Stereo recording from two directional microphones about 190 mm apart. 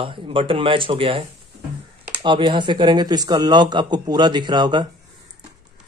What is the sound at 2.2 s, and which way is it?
Speech, 25° right (ahead or behind).